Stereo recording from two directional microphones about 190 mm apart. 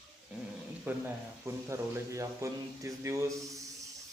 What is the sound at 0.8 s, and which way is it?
Speech, 10° right (ahead or behind).